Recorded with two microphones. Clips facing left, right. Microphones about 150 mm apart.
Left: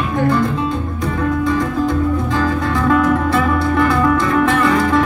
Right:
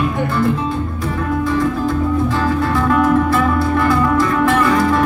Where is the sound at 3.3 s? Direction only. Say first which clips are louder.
Even; 20° left (ahead or behind).